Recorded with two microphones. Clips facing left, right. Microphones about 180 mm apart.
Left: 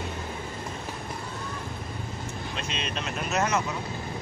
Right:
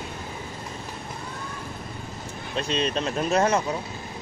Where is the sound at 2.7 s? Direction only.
35° right (ahead or behind).